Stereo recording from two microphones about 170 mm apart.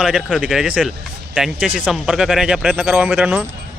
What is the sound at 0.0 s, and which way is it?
Speech, 5° right (ahead or behind).